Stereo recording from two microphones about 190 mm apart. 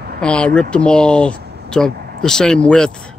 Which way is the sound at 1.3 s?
55° right (ahead or behind).